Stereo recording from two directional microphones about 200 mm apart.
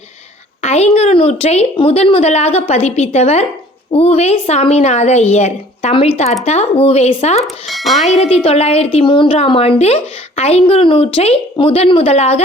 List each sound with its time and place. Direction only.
0.6 s speech: 35° left (ahead or behind)
7.4 s speech: centre (ahead or behind)
8.0 s a woman's voice: 30° left (ahead or behind)